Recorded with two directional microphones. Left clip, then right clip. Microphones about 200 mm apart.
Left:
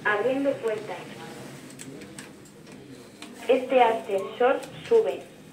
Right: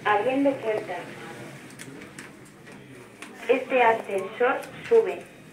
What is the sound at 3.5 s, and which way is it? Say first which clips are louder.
A woman's voice: even; 30° left (ahead or behind).